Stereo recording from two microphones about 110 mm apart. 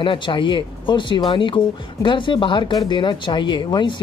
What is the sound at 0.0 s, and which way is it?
Speech, 50° left (ahead or behind).